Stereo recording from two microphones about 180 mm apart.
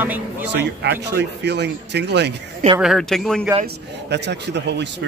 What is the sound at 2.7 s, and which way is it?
Speech, centre (ahead or behind).